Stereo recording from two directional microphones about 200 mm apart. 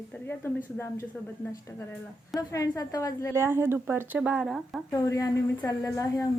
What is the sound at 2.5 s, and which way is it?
Speech, 15° left (ahead or behind).